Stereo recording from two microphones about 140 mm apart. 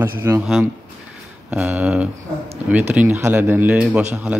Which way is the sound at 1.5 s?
10° right (ahead or behind).